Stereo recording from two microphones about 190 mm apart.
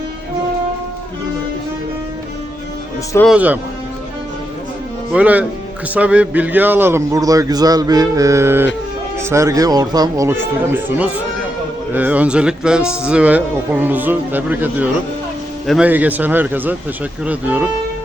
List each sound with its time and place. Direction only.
3.2 s speech: 5° right (ahead or behind)
5.1 s speech: 5° right (ahead or behind)